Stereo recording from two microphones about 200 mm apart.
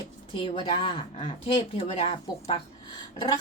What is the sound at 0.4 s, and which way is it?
A woman's voice, 25° left (ahead or behind).